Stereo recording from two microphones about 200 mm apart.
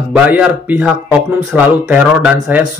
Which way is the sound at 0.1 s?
5° right (ahead or behind).